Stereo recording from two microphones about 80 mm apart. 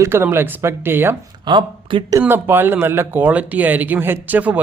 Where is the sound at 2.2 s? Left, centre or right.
Right.